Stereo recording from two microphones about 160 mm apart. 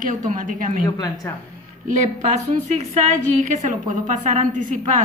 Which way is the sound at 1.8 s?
50° right (ahead or behind).